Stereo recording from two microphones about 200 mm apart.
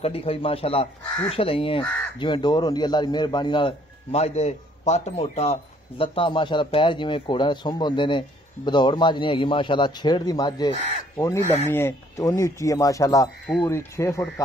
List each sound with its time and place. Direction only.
0.0 s speech: 30° left (ahead or behind); by 14.2 s 15° left (ahead or behind)